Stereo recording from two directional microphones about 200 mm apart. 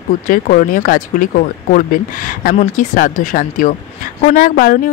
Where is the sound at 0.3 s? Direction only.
45° left (ahead or behind).